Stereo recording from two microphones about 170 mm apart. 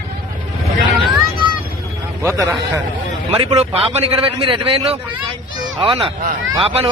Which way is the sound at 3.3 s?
35° right (ahead or behind).